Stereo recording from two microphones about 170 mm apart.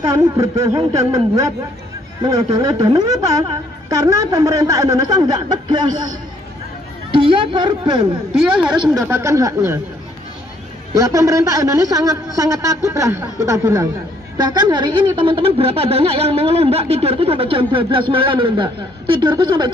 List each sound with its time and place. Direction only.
0.0 s speech: 20° right (ahead or behind)
7.1 s speech: 30° right (ahead or behind)
8.4 s a woman's voice: 5° right (ahead or behind)
11.0 s a woman's voice: 20° right (ahead or behind)